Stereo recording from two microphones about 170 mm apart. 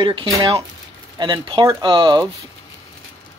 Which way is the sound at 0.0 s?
30° right (ahead or behind).